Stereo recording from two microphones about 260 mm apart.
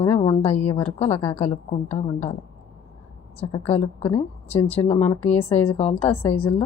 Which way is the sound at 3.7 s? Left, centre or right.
Left.